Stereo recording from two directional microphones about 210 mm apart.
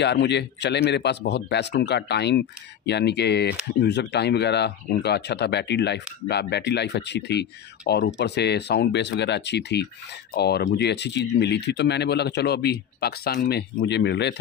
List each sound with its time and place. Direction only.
0.0 s speech: 55° left (ahead or behind)